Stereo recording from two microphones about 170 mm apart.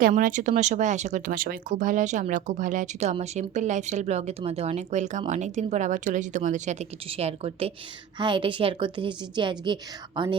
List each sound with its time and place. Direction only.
0.1 s a woman's voice: 50° right (ahead or behind); by 9.7 s 25° right (ahead or behind)